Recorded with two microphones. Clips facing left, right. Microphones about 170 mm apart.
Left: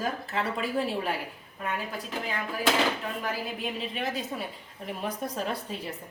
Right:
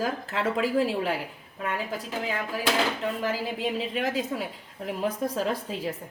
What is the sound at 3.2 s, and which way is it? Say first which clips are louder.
A woman's voice: right 4 dB; 90° right.